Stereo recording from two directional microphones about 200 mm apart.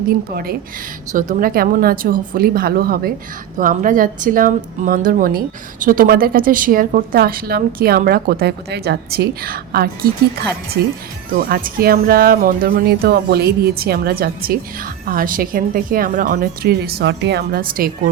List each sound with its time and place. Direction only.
0.1 s speech: 50° right (ahead or behind)
11.3 s speech: 45° right (ahead or behind)